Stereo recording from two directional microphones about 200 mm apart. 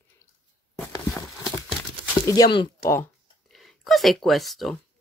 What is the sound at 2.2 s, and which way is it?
Speech, 20° left (ahead or behind).